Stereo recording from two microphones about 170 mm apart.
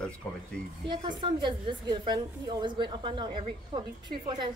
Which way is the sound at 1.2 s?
30° right (ahead or behind).